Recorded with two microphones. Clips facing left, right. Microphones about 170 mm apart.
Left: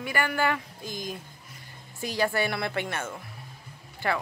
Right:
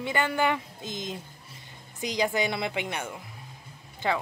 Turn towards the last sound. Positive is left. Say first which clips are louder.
# right 1 dB
turn(degrees=-20)  # may be behind; listen again after turning